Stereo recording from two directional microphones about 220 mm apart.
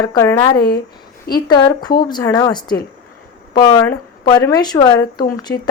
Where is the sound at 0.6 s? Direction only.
45° left (ahead or behind).